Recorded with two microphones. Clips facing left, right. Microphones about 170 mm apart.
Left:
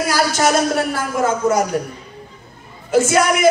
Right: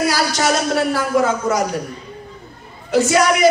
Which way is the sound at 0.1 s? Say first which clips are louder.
Left 2 dB; 50° left (ahead or behind).